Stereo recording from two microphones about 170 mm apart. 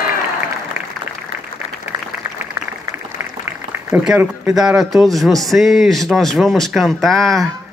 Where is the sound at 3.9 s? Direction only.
10° right (ahead or behind).